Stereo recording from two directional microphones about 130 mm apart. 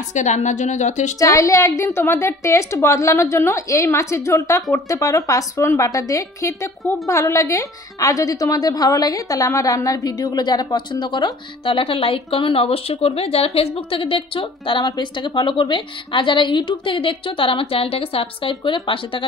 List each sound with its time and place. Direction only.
0.1 s a woman's voice: 65° left (ahead or behind)
1.2 s a woman's voice: 25° left (ahead or behind)